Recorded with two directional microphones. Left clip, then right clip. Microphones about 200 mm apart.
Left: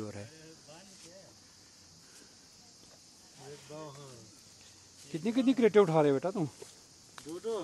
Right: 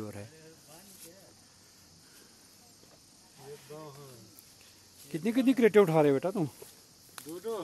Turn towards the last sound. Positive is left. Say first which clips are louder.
# even
turn(degrees=5)  # may be behind; listen again after turning